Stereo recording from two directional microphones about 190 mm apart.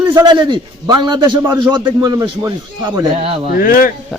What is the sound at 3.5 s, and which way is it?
Speech, 50° left (ahead or behind).